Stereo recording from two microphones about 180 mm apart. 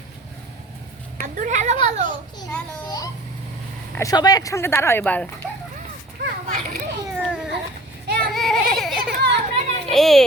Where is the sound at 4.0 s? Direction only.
20° left (ahead or behind).